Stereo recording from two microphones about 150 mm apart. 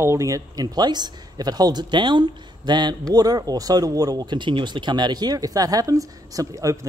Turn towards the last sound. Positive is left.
turn(degrees=-20)  # may be behind; listen again after turning